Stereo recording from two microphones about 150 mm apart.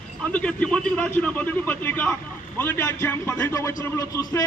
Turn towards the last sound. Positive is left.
turn(degrees=25)  # may be behind; listen again after turning